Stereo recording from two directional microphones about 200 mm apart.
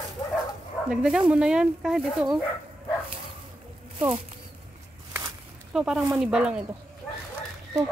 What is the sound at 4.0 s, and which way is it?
Speech, 30° right (ahead or behind).